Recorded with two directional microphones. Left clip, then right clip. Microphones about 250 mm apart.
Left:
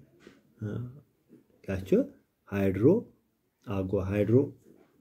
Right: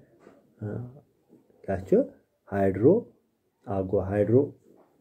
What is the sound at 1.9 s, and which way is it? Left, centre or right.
Speech, centre.